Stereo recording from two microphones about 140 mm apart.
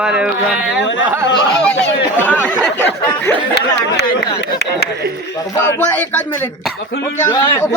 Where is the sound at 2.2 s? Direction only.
15° left (ahead or behind).